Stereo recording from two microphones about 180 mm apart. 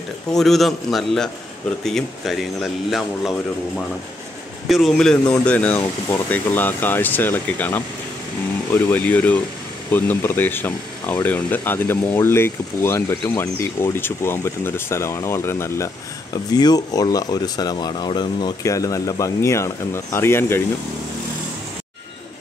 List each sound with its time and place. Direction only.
0.4 s speech: centre (ahead or behind)